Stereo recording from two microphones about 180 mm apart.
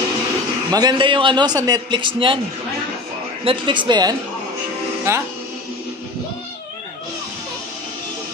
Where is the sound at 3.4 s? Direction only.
25° right (ahead or behind).